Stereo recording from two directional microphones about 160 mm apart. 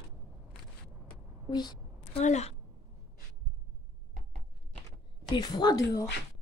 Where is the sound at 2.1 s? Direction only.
45° left (ahead or behind).